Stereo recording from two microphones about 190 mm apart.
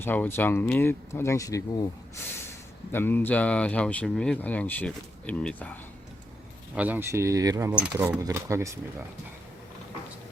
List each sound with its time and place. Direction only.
0.0 s speech: 10° left (ahead or behind)
2.9 s speech: 10° left (ahead or behind)
6.7 s speech: 10° right (ahead or behind)